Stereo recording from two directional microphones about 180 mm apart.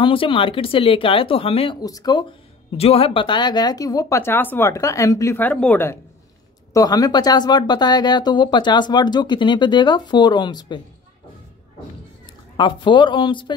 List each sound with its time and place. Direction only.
0.0 s speech: 30° left (ahead or behind)
2.8 s speech: 30° left (ahead or behind)
12.5 s speech: 25° left (ahead or behind)